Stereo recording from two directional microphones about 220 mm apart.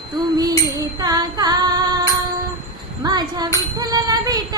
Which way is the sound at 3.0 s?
20° right (ahead or behind).